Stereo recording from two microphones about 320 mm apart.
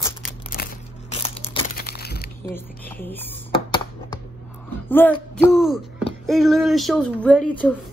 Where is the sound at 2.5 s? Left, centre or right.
Centre.